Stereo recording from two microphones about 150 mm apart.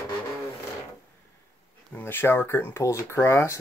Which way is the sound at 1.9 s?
15° left (ahead or behind).